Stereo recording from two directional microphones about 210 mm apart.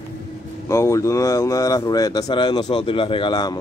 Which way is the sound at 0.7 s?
15° left (ahead or behind).